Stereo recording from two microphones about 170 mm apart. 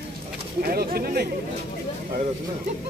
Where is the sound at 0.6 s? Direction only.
60° right (ahead or behind).